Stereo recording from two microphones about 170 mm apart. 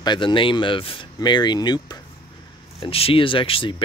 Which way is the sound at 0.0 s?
25° left (ahead or behind).